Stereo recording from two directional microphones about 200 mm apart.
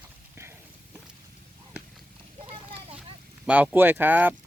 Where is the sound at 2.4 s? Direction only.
30° right (ahead or behind).